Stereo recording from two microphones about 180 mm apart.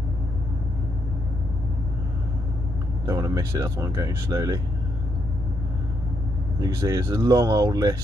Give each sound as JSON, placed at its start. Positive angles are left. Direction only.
{"t": 3.1, "sound": "speech", "side_deg": -20}
{"t": 6.6, "sound": "speech", "side_deg": -20}